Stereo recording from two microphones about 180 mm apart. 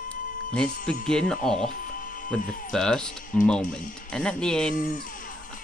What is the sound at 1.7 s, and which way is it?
Music, 50° left (ahead or behind).